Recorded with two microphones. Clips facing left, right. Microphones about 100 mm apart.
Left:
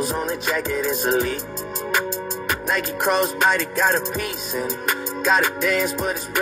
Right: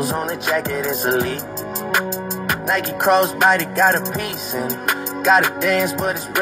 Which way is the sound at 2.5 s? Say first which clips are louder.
Right 3 dB; 50° right (ahead or behind).